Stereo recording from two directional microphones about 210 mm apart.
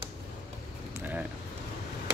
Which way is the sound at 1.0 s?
10° right (ahead or behind).